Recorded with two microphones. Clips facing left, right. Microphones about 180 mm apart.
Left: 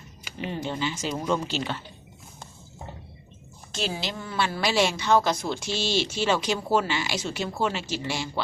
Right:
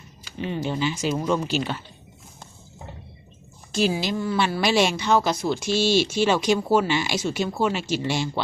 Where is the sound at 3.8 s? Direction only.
10° right (ahead or behind).